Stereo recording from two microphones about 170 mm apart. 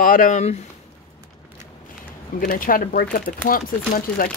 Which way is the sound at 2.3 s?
55° left (ahead or behind).